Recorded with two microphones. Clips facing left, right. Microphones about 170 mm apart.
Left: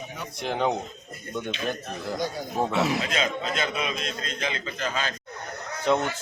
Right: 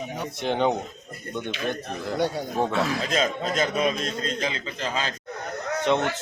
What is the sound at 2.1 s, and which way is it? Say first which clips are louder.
Speech: right 6 dB; 65° right (ahead or behind).